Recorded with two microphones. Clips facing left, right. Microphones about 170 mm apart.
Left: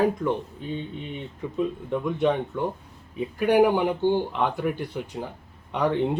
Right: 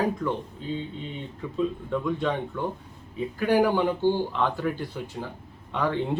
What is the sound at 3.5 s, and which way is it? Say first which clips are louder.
Speech: left 2 dB; 15° left (ahead or behind).